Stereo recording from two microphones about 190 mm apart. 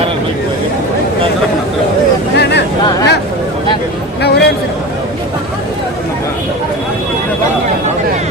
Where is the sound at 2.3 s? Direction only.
65° left (ahead or behind).